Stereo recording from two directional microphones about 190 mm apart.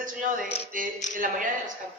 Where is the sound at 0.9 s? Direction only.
40° left (ahead or behind).